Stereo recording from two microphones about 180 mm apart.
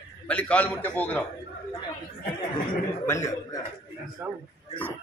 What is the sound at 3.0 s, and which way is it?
Speech, 15° left (ahead or behind).